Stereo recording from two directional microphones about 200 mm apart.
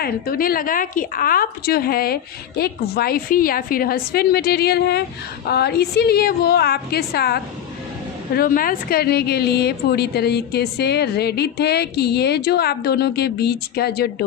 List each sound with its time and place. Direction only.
0.0 s a woman's voice: 45° left (ahead or behind)